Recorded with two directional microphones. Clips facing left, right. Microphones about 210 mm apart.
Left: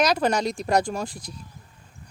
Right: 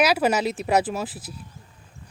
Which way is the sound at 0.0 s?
5° right (ahead or behind).